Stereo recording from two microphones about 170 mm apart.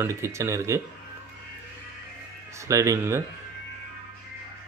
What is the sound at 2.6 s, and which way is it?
Speech, 15° right (ahead or behind).